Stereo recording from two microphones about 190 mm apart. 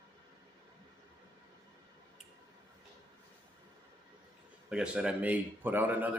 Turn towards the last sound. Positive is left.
turn(degrees=-10)  # may be behind; listen again after turning